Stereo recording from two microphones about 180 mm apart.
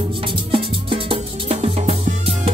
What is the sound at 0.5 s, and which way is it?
Music, 30° right (ahead or behind).